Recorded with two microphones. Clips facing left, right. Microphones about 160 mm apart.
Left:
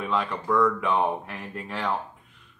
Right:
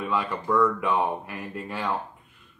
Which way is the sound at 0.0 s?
5° right (ahead or behind).